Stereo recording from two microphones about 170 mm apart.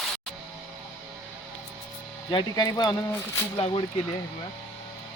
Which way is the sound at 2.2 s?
25° left (ahead or behind).